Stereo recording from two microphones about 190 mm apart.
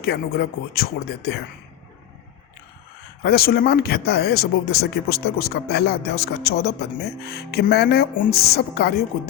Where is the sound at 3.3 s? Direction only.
55° left (ahead or behind).